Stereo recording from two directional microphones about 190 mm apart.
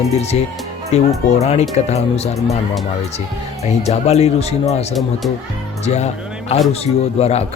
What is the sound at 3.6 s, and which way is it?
Speech, 35° left (ahead or behind).